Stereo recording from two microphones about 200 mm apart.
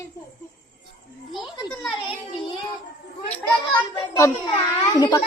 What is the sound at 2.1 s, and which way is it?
Child singing, 25° left (ahead or behind).